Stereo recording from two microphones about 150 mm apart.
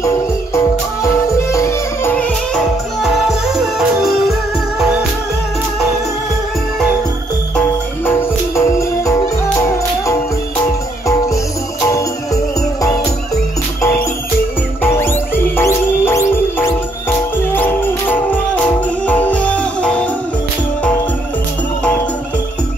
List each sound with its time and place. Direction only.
1.0 s music: 20° left (ahead or behind)
3.0 s music: centre (ahead or behind)
7.5 s music: 10° left (ahead or behind)
14.8 s music: 15° left (ahead or behind)